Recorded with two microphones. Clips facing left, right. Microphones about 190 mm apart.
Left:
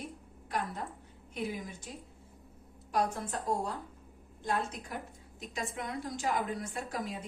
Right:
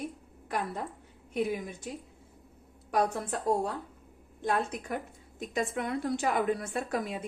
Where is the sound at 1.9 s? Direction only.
60° right (ahead or behind).